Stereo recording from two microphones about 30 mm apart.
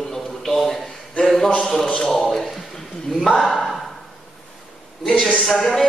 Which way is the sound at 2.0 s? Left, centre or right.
Centre.